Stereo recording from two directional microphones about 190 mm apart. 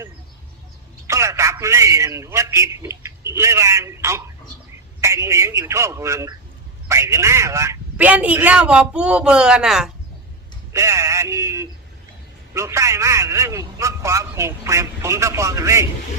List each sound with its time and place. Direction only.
1.0 s a man's voice: 15° right (ahead or behind)
10.7 s a man's voice: 15° right (ahead or behind)